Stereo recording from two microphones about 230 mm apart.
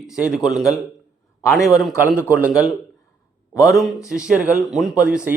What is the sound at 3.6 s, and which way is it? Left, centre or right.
A man's voice, centre.